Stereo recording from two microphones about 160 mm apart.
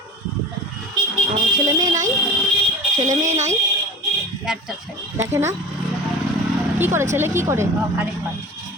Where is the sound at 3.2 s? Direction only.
45° right (ahead or behind).